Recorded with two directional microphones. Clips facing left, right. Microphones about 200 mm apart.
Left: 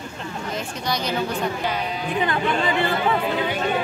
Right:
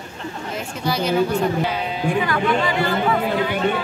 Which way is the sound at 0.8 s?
5° right (ahead or behind).